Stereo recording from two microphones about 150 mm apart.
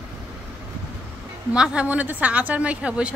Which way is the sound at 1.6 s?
10° right (ahead or behind).